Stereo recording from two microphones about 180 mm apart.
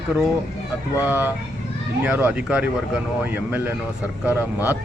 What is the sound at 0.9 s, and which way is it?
Speech, 15° left (ahead or behind).